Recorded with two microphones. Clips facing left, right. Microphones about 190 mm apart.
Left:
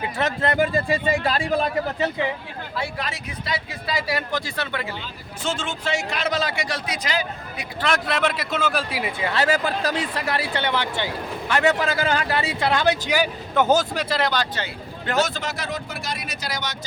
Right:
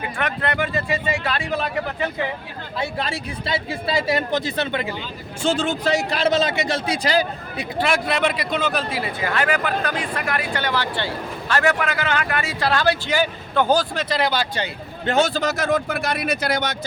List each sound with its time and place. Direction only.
0.2 s speech: 30° left (ahead or behind)
2.7 s speech: 25° right (ahead or behind)
5.4 s speech: 35° right (ahead or behind)
7.8 s a man's voice: 10° right (ahead or behind)
9.9 s speech: 30° left (ahead or behind); by 14.2 s 10° left (ahead or behind)
14.2 s a man's voice: 5° right (ahead or behind)
15.0 s speech: 30° right (ahead or behind); by 16.7 s 55° right (ahead or behind)